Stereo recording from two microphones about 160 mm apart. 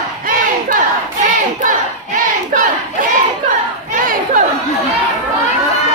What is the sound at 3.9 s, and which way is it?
Crowd, 55° right (ahead or behind).